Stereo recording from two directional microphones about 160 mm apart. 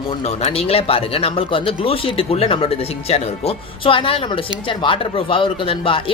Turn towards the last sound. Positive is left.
turn(degrees=30)  # may be behind; listen again after turning